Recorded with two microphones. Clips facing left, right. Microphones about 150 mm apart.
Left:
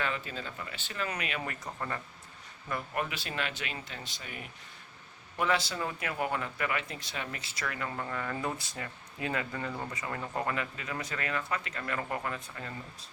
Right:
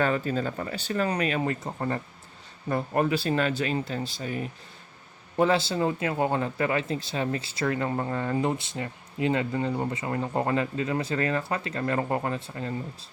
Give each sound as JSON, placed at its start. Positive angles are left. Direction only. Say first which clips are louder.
{"t": 0.0, "sound": "speech", "louder": "right 10 dB", "side_deg": -40}